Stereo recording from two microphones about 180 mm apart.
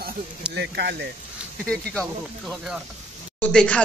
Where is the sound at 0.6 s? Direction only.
65° right (ahead or behind).